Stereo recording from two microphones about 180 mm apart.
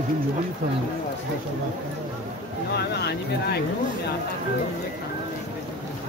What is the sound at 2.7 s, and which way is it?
Speech, 65° left (ahead or behind).